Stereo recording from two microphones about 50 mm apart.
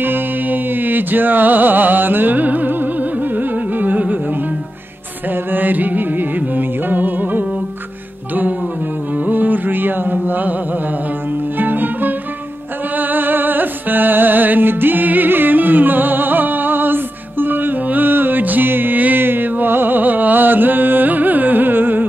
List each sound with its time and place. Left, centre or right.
0.0 s music: right
5.3 s music: right
9.2 s music: right
10.1 s mantra: right
11.5 s music: right